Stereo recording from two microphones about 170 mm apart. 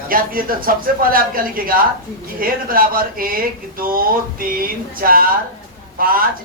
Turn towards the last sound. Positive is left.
turn(degrees=-55)  # may be behind; listen again after turning